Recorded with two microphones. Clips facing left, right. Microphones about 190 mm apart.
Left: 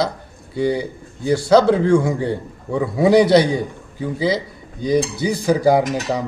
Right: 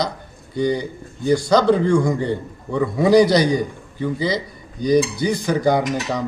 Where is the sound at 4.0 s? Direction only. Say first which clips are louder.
Left 1 dB; 5° left (ahead or behind).